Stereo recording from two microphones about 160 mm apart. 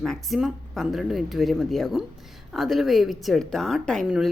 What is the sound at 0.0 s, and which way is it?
Speech, centre (ahead or behind).